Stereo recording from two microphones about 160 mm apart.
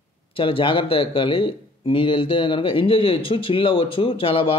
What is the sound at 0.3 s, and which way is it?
Speech, 35° left (ahead or behind).